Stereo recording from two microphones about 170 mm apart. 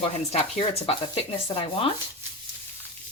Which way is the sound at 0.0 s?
35° left (ahead or behind).